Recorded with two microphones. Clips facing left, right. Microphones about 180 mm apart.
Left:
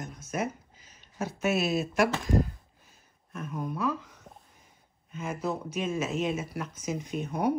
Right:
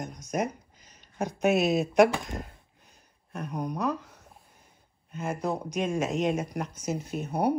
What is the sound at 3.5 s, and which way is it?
Speech, 40° right (ahead or behind).